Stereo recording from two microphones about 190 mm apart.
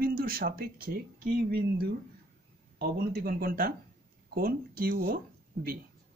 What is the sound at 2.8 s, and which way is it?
Speech, 50° right (ahead or behind).